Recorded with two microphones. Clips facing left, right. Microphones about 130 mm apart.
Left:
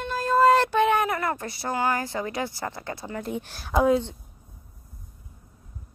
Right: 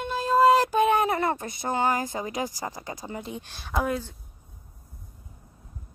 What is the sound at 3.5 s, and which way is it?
Speech, 5° left (ahead or behind).